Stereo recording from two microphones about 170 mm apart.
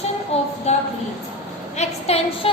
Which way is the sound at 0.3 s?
40° left (ahead or behind).